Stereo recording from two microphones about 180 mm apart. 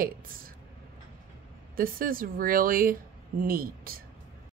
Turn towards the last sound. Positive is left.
turn(degrees=-55)  # may be behind; listen again after turning